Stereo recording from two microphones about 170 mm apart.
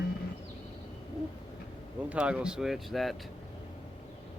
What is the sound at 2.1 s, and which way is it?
Speech, 5° right (ahead or behind).